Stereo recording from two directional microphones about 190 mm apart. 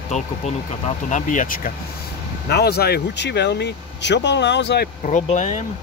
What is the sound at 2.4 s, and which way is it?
Speech, 55° left (ahead or behind).